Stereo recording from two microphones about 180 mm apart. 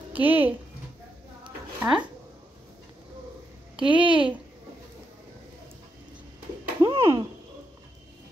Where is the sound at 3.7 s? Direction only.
30° right (ahead or behind).